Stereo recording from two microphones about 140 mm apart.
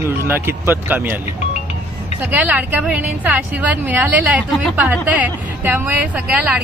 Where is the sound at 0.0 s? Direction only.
15° right (ahead or behind).